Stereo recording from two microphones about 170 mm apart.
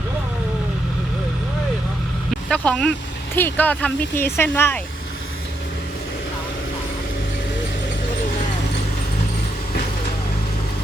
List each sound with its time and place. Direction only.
2.3 s speech: 5° left (ahead or behind)